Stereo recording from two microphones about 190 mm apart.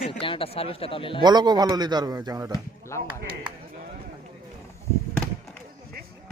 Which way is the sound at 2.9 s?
15° left (ahead or behind).